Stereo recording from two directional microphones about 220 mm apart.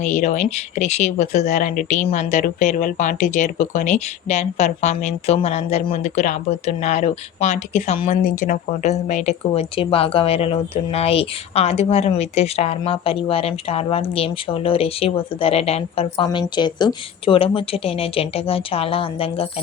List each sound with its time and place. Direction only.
0.0 s speech: 30° left (ahead or behind)